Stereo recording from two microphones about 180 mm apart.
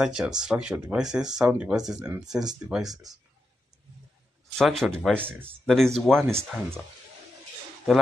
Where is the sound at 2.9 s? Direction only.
20° right (ahead or behind).